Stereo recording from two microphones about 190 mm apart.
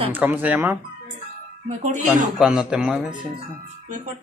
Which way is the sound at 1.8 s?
40° right (ahead or behind).